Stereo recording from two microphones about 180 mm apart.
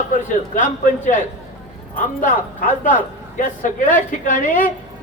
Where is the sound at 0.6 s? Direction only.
45° left (ahead or behind).